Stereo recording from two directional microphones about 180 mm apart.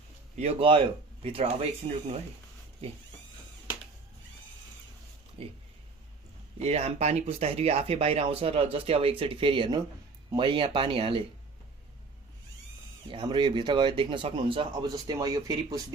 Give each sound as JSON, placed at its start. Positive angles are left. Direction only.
{"t": 0.3, "sound": "speech", "side_deg": -30}
{"t": 5.4, "sound": "speech", "side_deg": -30}
{"t": 6.6, "sound": "speech", "side_deg": -35}
{"t": 13.1, "sound": "speech", "side_deg": -25}